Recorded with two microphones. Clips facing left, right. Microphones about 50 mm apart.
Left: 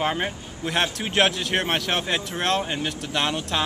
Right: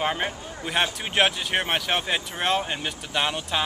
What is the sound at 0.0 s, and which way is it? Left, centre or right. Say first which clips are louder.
Speech: left 1 dB; centre.